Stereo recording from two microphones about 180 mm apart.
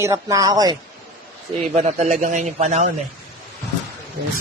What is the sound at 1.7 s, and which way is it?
A man's voice, 40° right (ahead or behind).